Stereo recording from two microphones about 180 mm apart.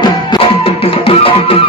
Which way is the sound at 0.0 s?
30° left (ahead or behind).